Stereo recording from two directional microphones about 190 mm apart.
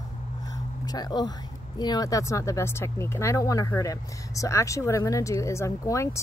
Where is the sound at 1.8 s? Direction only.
20° left (ahead or behind).